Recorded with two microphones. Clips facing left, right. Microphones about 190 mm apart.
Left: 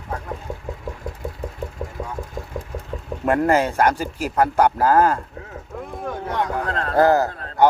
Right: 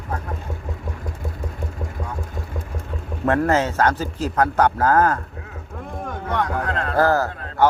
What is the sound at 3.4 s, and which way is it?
A man's voice, 10° left (ahead or behind).